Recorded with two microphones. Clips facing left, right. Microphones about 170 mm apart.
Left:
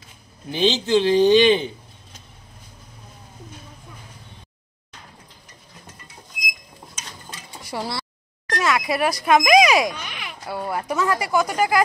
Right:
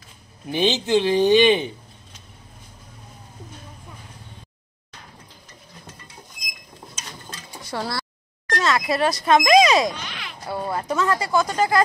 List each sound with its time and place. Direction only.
0.5 s speech: 15° right (ahead or behind)
7.7 s speech: 10° left (ahead or behind)
8.5 s a sound: 10° left (ahead or behind)
9.2 s speech: 10° left (ahead or behind)